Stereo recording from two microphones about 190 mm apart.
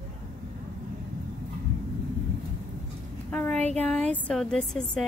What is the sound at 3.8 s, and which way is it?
A woman's voice, 5° left (ahead or behind).